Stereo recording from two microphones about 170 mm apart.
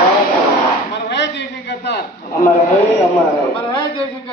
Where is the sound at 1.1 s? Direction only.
90° left.